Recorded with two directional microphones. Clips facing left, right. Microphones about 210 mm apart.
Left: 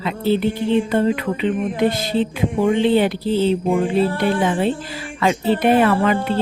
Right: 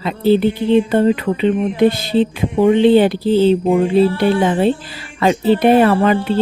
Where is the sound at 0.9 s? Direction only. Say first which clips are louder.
Right 4 dB; 30° right (ahead or behind).